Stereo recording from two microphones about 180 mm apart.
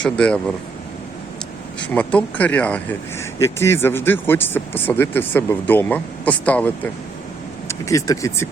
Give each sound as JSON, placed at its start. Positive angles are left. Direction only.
{"t": 0.0, "sound": "speech", "side_deg": 5}
{"t": 1.9, "sound": "speech", "side_deg": 10}